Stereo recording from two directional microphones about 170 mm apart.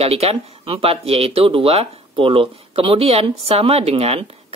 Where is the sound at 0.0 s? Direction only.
35° right (ahead or behind).